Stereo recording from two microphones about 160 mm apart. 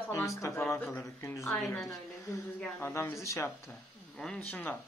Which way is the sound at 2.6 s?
15° left (ahead or behind).